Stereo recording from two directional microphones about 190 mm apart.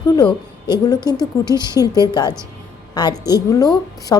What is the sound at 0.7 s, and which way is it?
A woman's voice, 20° left (ahead or behind).